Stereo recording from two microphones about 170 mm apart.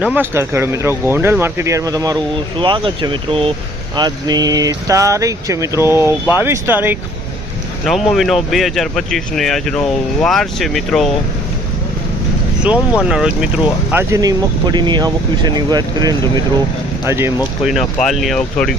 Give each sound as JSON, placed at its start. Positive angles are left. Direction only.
{"t": 0.0, "sound": "speech", "side_deg": -10}
{"t": 7.9, "sound": "speech", "side_deg": 0}
{"t": 12.6, "sound": "speech", "side_deg": -5}
{"t": 13.9, "sound": "speech", "side_deg": -20}
{"t": 17.7, "sound": "speech", "side_deg": 0}